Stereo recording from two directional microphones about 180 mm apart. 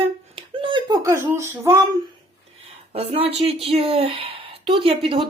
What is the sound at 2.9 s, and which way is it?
Speech, 30° right (ahead or behind).